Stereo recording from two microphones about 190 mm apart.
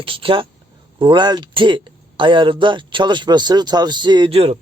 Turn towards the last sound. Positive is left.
turn(degrees=-30)  # may be behind; listen again after turning